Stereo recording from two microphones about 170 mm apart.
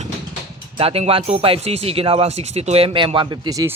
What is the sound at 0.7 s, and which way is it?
A man's voice, 35° right (ahead or behind).